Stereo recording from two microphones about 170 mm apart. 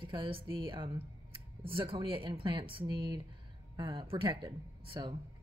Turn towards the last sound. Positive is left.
turn(degrees=-20)  # may be behind; listen again after turning